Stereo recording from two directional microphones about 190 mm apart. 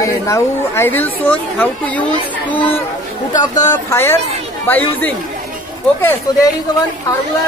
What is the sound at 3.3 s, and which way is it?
Speech, 20° left (ahead or behind).